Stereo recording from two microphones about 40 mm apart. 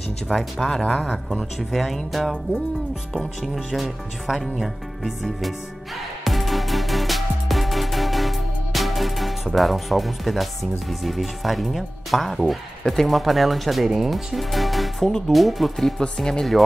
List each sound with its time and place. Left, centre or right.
0.6 s speech: centre
1.0 s speech: centre
3.7 s speech: centre
6.2 s music: centre
10.9 s speech: centre
16.2 s speech: centre